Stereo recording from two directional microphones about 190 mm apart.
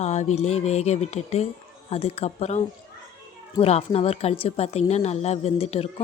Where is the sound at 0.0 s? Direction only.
40° left (ahead or behind).